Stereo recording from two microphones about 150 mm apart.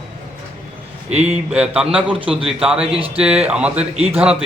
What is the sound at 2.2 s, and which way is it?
Speech, 40° right (ahead or behind).